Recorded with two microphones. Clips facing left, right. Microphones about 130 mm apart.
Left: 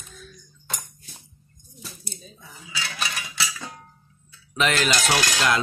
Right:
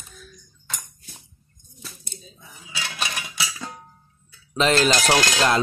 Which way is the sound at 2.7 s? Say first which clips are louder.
Right 1 dB; 25° right (ahead or behind).